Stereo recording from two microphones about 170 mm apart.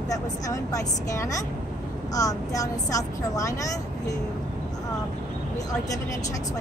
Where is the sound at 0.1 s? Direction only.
20° left (ahead or behind).